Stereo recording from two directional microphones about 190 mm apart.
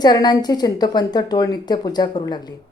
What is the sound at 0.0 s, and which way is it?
Speech, 20° left (ahead or behind).